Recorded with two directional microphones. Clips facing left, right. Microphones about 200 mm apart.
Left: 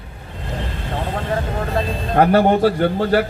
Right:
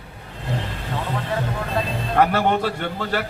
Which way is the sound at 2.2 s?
40° left (ahead or behind).